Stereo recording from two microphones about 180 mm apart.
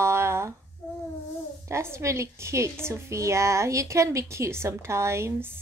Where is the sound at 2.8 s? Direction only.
15° right (ahead or behind).